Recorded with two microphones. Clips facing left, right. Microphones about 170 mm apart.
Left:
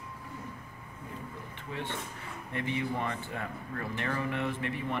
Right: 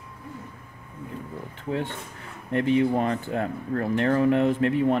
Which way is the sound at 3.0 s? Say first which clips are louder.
Right 10 dB; 65° right (ahead or behind).